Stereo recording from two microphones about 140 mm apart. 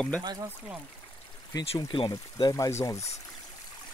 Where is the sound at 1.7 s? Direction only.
35° left (ahead or behind).